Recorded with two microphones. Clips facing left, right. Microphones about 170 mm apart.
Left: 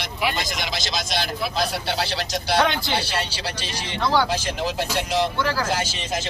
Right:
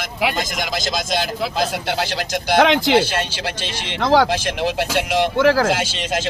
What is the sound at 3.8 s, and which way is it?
Speech, 90° right.